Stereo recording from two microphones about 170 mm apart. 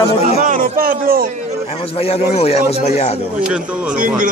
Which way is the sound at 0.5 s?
60° right (ahead or behind).